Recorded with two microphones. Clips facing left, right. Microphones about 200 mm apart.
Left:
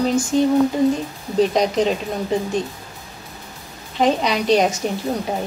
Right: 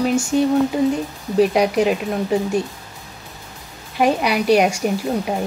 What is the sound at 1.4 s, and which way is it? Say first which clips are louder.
Speech: right 1 dB; 10° right (ahead or behind).